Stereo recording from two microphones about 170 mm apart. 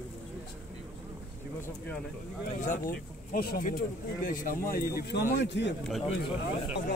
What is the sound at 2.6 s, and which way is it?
Speech, 55° left (ahead or behind).